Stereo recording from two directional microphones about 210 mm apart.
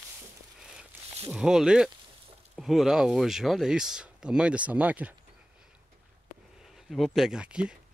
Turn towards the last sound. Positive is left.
turn(degrees=-5)  # may be behind; listen again after turning